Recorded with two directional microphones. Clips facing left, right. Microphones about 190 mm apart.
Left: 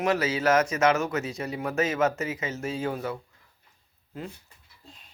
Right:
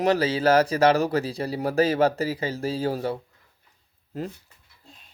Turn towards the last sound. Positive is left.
turn(degrees=-40)  # may be behind; listen again after turning